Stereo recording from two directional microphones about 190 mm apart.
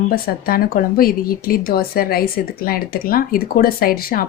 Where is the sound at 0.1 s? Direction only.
50° left (ahead or behind).